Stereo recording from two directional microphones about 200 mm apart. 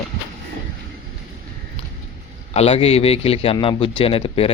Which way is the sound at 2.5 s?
30° left (ahead or behind).